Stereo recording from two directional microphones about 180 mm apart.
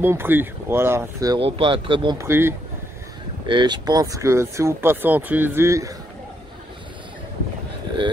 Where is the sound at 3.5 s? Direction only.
25° right (ahead or behind).